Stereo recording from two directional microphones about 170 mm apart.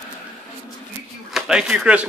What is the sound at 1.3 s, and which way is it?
Speech, 5° right (ahead or behind).